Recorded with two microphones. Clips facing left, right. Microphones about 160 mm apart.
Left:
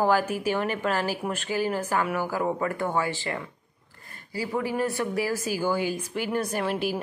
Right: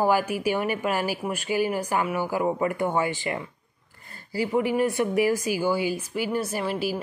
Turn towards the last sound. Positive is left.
turn(degrees=-5)  # may be behind; listen again after turning